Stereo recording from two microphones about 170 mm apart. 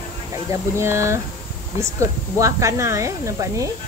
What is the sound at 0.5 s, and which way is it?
Speech, 15° right (ahead or behind).